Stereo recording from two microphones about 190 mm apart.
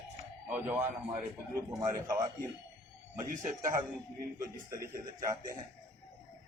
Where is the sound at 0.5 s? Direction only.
10° right (ahead or behind).